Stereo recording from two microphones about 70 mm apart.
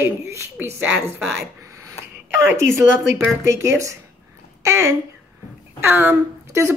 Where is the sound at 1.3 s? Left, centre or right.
Right.